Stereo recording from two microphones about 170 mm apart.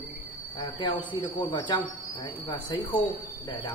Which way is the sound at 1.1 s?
25° left (ahead or behind).